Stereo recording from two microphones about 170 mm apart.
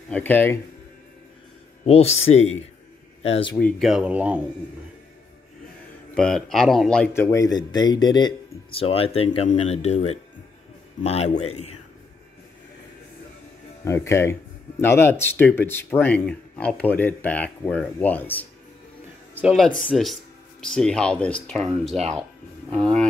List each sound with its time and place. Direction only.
0.1 s speech: 10° left (ahead or behind)
1.9 s speech: 35° left (ahead or behind)
3.5 s speech: centre (ahead or behind)
6.1 s speech: 5° left (ahead or behind); by 11.7 s 40° left (ahead or behind)
13.8 s speech: 15° left (ahead or behind)
19.3 s speech: centre (ahead or behind)